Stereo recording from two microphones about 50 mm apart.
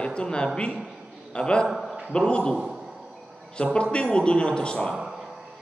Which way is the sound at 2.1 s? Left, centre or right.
Centre.